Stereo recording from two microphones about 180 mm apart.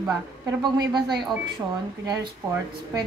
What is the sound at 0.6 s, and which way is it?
Speech, 25° right (ahead or behind).